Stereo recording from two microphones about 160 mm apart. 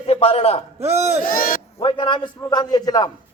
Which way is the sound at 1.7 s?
30° left (ahead or behind).